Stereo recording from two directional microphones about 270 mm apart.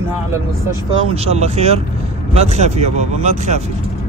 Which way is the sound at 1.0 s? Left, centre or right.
Right.